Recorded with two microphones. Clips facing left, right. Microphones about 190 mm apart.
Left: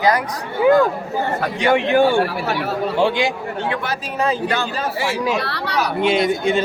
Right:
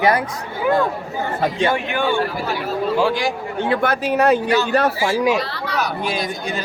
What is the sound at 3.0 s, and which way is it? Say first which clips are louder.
Speech: left 2 dB; 20° left (ahead or behind).